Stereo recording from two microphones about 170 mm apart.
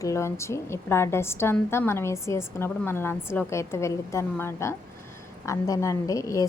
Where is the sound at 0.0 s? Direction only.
15° left (ahead or behind).